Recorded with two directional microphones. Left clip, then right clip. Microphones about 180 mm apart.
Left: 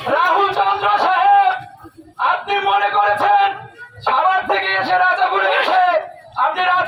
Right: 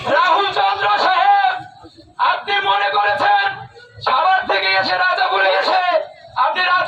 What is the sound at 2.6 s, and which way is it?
Music, centre (ahead or behind).